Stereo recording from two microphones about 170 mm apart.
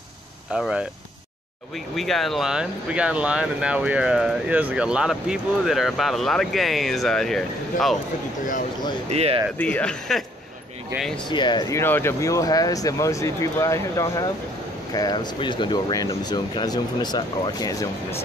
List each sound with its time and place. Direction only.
0.5 s speech: 5° right (ahead or behind)
2.0 s speech: centre (ahead or behind)
9.1 s speech: 35° right (ahead or behind)
9.6 s speech: 5° left (ahead or behind)
11.2 s speech: 25° left (ahead or behind)